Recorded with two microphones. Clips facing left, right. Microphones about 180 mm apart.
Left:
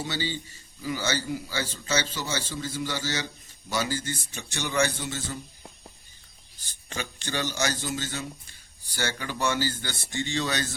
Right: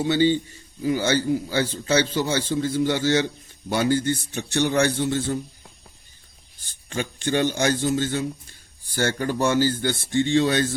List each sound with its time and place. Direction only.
0.0 s a man's voice: 55° right (ahead or behind)
6.9 s speech: 50° right (ahead or behind)